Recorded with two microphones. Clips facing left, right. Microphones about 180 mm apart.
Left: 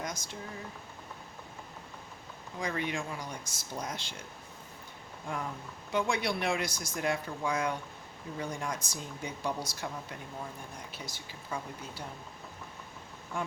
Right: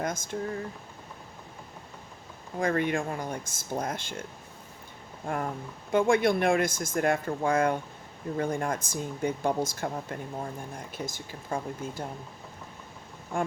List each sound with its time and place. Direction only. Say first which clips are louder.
0.0 s speech: right 7 dB; 50° right (ahead or behind)
2.6 s speech: right 7 dB; 55° right (ahead or behind)
13.3 s speech: right 6 dB; 50° right (ahead or behind)